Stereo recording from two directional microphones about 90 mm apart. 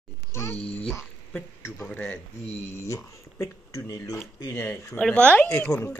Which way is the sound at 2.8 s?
35° left (ahead or behind).